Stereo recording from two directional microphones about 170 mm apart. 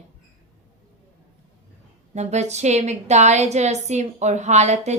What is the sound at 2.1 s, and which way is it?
A woman's voice, 40° right (ahead or behind).